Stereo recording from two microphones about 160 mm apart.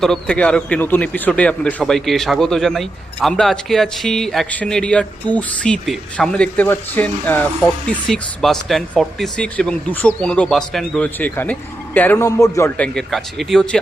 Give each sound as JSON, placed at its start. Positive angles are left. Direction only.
{"t": 0.0, "sound": "a man's voice", "side_deg": 5}
{"t": 12.7, "sound": "a man's voice", "side_deg": 5}